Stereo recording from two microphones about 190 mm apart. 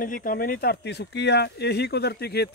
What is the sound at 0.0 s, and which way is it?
Speech, 45° left (ahead or behind).